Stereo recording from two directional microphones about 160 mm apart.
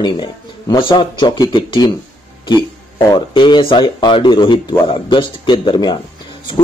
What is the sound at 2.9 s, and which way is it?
A man's voice, 30° left (ahead or behind).